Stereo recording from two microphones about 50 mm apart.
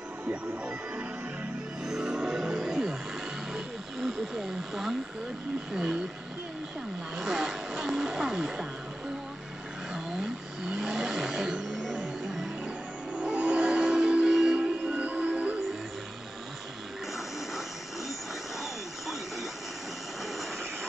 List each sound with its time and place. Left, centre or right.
0.3 s music: right
3.5 s wild animals: centre
5.7 s speech: centre
7.2 s vehicle: centre
10.7 s vehicle: centre
11.7 s music: centre
14.9 s music: right